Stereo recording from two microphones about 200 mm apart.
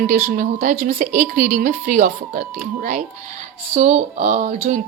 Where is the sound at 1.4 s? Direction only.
40° right (ahead or behind).